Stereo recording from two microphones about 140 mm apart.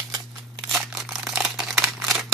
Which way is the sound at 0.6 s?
Centre (ahead or behind).